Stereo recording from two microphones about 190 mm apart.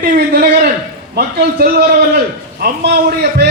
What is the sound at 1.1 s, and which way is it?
A man's voice, 55° right (ahead or behind).